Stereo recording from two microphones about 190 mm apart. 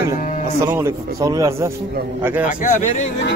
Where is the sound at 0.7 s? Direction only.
15° right (ahead or behind).